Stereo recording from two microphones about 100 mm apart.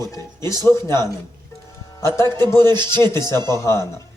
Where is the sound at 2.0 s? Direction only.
30° left (ahead or behind).